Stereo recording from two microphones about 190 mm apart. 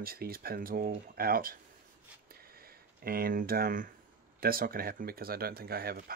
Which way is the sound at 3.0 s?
50° right (ahead or behind).